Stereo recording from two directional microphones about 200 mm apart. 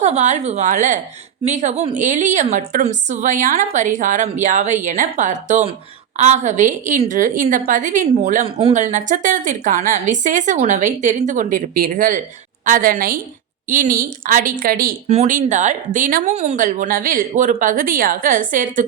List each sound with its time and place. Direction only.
0.0 s speech: 35° right (ahead or behind)
8.4 s a woman's voice: 25° right (ahead or behind); by 14.9 s 45° right (ahead or behind)
15.0 s speech: 35° right (ahead or behind)